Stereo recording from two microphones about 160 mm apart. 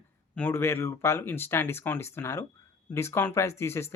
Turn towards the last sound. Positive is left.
turn(degrees=15)  # may be behind; listen again after turning